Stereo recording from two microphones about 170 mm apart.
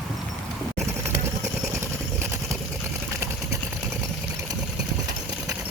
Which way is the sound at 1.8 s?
15° right (ahead or behind).